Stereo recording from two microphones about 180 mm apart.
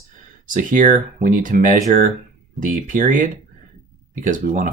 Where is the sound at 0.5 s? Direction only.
45° right (ahead or behind).